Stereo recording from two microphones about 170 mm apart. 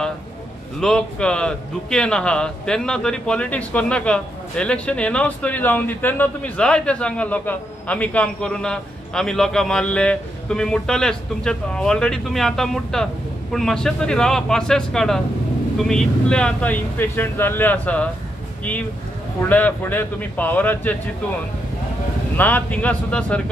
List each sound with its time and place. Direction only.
0.7 s a man's voice: 5° left (ahead or behind)
19.5 s speech: 10° left (ahead or behind)
22.4 s speech: 10° left (ahead or behind)